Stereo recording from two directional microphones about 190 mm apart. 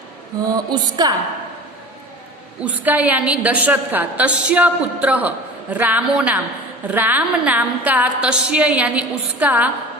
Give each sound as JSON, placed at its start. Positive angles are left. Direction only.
{"t": 0.4, "sound": "music", "side_deg": -20}
{"t": 2.6, "sound": "a woman's voice", "side_deg": -10}